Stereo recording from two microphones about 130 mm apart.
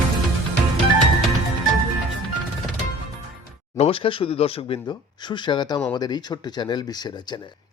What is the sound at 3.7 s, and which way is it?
Speech, 45° left (ahead or behind).